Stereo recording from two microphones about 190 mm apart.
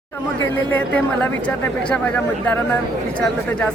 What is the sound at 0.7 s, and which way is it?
A woman's voice, 10° left (ahead or behind).